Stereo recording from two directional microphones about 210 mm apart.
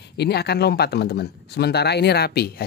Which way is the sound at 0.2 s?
50° left (ahead or behind).